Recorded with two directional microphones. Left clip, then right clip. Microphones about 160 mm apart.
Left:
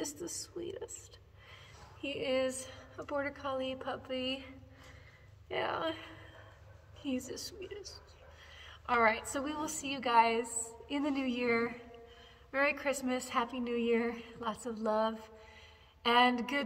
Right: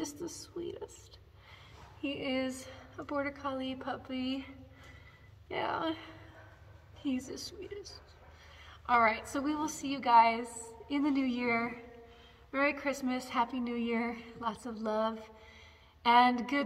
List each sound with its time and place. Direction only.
0.0 s speech: 20° left (ahead or behind)
2.0 s a woman's voice: 25° left (ahead or behind)
5.5 s a woman's voice: 20° left (ahead or behind)